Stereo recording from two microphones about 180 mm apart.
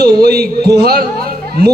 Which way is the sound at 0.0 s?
60° right (ahead or behind).